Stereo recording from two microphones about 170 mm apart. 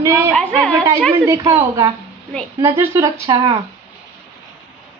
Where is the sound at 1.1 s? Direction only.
15° right (ahead or behind).